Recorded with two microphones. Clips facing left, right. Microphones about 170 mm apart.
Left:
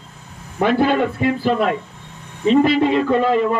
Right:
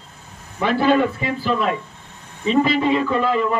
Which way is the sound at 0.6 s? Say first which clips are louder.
Left 4 dB; 55° left (ahead or behind).